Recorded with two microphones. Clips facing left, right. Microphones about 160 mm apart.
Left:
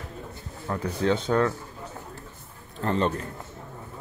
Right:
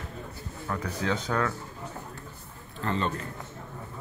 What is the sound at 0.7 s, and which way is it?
Speech, 30° left (ahead or behind).